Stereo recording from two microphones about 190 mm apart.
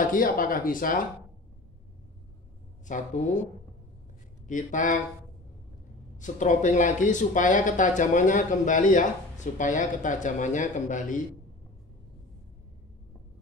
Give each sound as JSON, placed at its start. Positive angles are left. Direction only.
{"t": 0.1, "sound": "speech", "side_deg": 45}
{"t": 2.9, "sound": "speech", "side_deg": 40}
{"t": 4.5, "sound": "speech", "side_deg": 40}
{"t": 6.1, "sound": "speech", "side_deg": 40}